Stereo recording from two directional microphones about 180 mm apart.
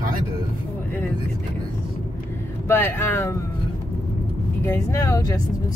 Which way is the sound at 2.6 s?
15° left (ahead or behind).